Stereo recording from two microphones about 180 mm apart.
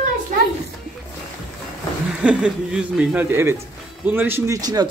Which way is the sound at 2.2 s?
5° right (ahead or behind).